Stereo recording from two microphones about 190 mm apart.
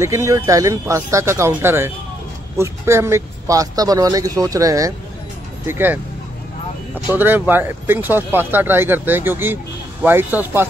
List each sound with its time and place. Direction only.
0.0 s speech: 15° right (ahead or behind)
7.1 s speech: 10° right (ahead or behind)